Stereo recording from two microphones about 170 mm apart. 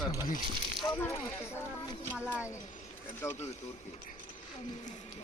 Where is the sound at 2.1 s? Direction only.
5° right (ahead or behind).